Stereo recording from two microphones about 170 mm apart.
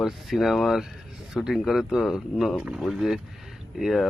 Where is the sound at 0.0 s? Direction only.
Centre (ahead or behind).